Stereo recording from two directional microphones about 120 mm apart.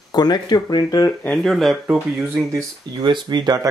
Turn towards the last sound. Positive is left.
turn(degrees=-35)  # may be behind; listen again after turning